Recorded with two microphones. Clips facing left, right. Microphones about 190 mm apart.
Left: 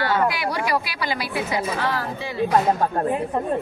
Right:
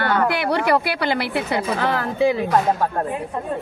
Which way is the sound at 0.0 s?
60° right (ahead or behind).